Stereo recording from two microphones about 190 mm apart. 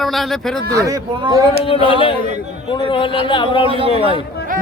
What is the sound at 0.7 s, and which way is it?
Speech, 20° right (ahead or behind).